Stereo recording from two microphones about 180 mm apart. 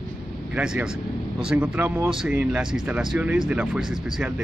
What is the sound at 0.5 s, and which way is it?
Speech, 5° right (ahead or behind).